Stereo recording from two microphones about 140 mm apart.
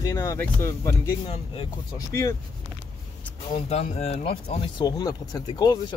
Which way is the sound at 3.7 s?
50° left (ahead or behind).